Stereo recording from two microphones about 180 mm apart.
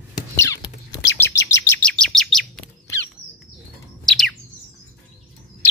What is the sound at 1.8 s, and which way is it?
Chirp, 5° left (ahead or behind).